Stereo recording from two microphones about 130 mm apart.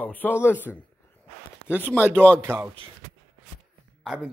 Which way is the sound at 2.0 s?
10° left (ahead or behind).